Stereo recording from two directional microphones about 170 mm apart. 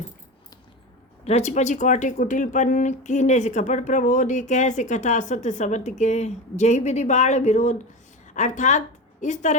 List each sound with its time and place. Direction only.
1.2 s a woman's voice: 40° left (ahead or behind)